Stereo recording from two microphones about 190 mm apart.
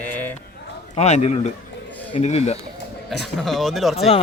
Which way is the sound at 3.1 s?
60° left (ahead or behind).